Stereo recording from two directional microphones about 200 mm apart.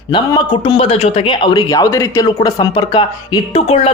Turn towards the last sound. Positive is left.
turn(degrees=30)  # may be behind; listen again after turning